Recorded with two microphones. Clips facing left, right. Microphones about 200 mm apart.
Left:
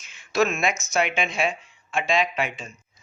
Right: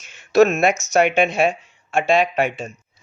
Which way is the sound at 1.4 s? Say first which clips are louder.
Right 7 dB; 45° right (ahead or behind).